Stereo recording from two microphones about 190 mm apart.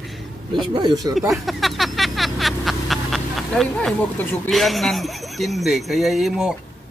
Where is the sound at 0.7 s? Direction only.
20° right (ahead or behind).